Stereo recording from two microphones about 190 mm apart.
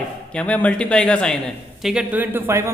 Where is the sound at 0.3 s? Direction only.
5° left (ahead or behind).